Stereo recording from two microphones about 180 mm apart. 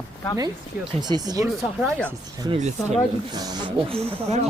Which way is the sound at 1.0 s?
20° right (ahead or behind).